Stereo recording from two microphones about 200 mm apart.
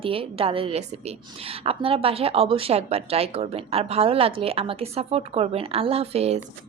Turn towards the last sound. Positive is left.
turn(degrees=-30)  # may be behind; listen again after turning